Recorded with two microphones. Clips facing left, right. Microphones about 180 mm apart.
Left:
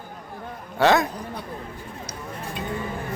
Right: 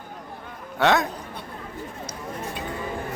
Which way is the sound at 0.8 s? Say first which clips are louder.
Left 2 dB; centre (ahead or behind).